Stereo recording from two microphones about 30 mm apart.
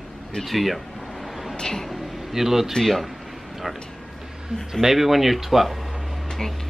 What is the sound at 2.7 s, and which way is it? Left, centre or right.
Speech, centre.